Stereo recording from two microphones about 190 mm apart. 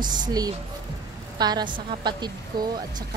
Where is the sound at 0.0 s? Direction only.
20° right (ahead or behind).